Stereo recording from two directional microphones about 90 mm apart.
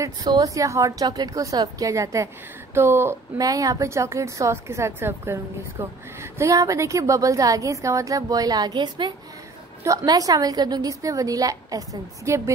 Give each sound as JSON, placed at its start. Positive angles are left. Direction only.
{"t": 0.0, "sound": "a woman's voice", "side_deg": -45}
{"t": 2.7, "sound": "speech", "side_deg": -25}
{"t": 3.3, "sound": "a woman's voice", "side_deg": -40}
{"t": 9.8, "sound": "a woman's voice", "side_deg": -45}